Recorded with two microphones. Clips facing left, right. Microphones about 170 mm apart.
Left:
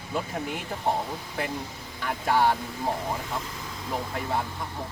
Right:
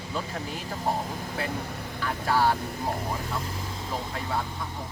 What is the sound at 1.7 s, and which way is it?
Vehicle, 60° right (ahead or behind).